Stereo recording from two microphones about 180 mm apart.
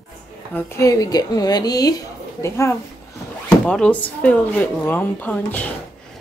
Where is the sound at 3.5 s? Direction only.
5° left (ahead or behind).